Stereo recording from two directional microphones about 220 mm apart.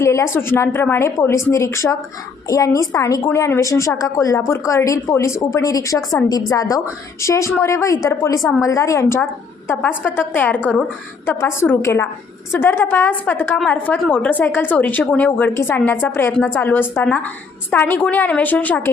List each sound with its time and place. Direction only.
0.0 s a woman's voice: 15° left (ahead or behind)
6.0 s a woman's voice: centre (ahead or behind)
6.2 s a woman's voice: 15° left (ahead or behind)